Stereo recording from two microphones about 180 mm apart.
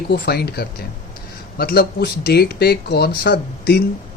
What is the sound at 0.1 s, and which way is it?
Speech, 65° left (ahead or behind).